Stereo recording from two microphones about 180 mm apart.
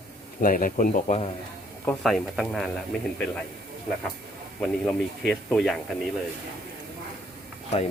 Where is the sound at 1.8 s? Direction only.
Centre (ahead or behind).